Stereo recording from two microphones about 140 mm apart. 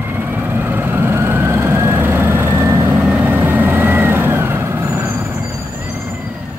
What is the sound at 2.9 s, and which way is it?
Vehicle, 10° right (ahead or behind).